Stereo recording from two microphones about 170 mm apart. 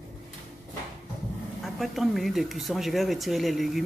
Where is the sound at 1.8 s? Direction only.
Centre (ahead or behind).